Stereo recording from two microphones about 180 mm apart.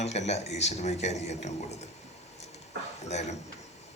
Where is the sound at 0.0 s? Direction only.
40° left (ahead or behind).